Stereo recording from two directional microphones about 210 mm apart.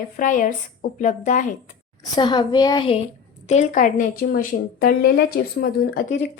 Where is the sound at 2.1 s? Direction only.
20° left (ahead or behind).